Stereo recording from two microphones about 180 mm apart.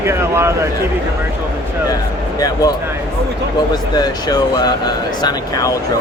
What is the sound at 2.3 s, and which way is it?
Speech, 20° left (ahead or behind).